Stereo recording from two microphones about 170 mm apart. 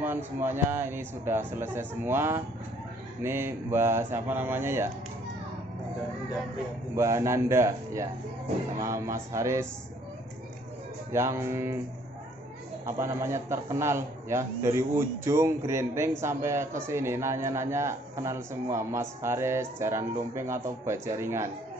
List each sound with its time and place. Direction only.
0.0 s a man's voice: 15° right (ahead or behind)
7.0 s a man's voice: 15° right (ahead or behind)
11.1 s a man's voice: 15° right (ahead or behind)
12.8 s a man's voice: 15° right (ahead or behind)